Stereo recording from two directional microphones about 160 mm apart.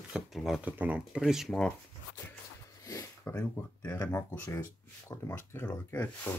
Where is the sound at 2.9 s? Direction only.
20° left (ahead or behind).